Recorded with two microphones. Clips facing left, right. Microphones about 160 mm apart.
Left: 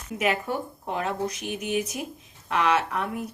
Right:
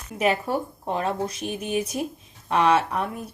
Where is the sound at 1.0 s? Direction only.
30° right (ahead or behind).